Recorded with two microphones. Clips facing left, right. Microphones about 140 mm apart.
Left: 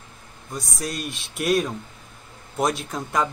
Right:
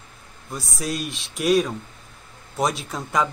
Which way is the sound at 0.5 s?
Centre (ahead or behind).